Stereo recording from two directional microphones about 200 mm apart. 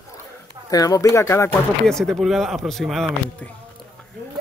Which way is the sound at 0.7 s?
15° left (ahead or behind).